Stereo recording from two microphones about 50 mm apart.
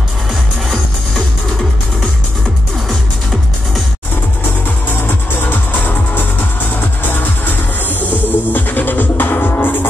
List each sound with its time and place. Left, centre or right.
5.0 s music: left
8.1 s music: left